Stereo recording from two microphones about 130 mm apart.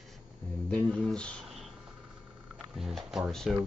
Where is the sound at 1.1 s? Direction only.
5° left (ahead or behind).